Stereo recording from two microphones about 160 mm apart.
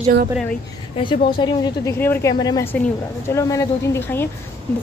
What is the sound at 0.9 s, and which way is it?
Speech, 30° left (ahead or behind).